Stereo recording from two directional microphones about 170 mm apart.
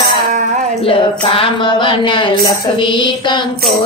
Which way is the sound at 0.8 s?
35° left (ahead or behind).